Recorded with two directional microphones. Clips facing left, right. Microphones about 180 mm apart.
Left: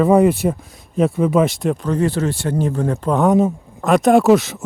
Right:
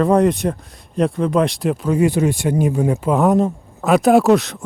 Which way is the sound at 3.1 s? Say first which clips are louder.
Left 2 dB; centre (ahead or behind).